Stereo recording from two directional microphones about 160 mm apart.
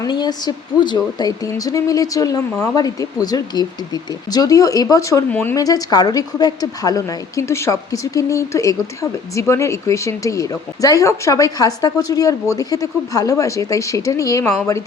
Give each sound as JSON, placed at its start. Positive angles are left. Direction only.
{"t": 0.0, "sound": "a woman's voice", "side_deg": 25}